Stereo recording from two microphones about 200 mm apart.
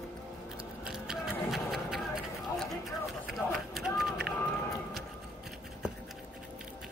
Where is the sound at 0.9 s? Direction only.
Centre (ahead or behind).